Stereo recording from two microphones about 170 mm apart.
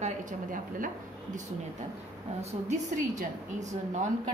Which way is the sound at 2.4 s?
45° right (ahead or behind).